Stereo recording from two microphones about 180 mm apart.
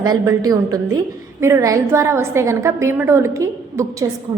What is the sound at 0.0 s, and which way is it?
A woman's voice, 20° right (ahead or behind).